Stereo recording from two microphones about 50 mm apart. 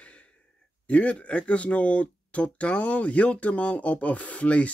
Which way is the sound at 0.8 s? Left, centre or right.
Left.